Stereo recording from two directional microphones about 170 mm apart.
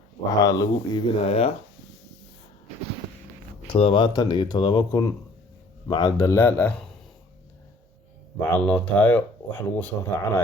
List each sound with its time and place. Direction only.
0.3 s speech: 20° left (ahead or behind)
1.2 s speech: 35° left (ahead or behind)
3.7 s speech: 30° left (ahead or behind); by 6.8 s 10° left (ahead or behind)
8.5 s speech: 10° left (ahead or behind)